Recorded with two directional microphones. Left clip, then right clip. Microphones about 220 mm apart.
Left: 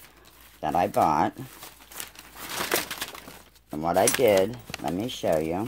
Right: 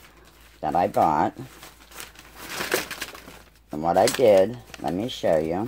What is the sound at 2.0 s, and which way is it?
Crumpling, 35° left (ahead or behind).